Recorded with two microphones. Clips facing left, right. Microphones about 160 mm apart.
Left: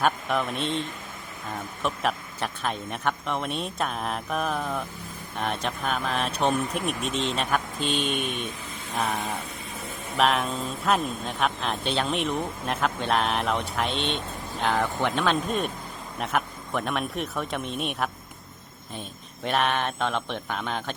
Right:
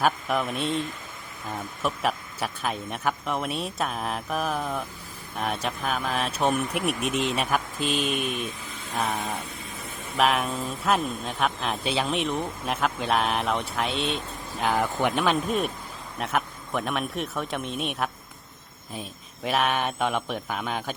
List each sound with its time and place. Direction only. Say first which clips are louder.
0.0 s speech: even; centre (ahead or behind)
1.8 s speech: even; 5° right (ahead or behind)
19.5 s speech: even; 5° right (ahead or behind)